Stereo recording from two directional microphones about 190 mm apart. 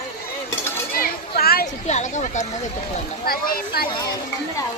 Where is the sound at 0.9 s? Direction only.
50° left (ahead or behind).